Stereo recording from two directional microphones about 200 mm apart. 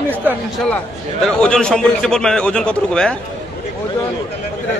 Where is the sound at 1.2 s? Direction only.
5° left (ahead or behind).